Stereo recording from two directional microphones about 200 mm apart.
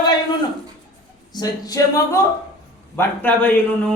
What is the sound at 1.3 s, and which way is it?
A woman's voice, 20° left (ahead or behind).